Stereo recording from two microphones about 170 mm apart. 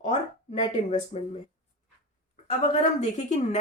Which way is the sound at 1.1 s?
40° left (ahead or behind).